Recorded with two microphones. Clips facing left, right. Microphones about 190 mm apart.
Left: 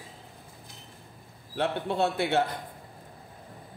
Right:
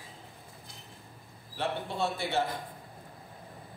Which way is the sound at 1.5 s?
65° left (ahead or behind).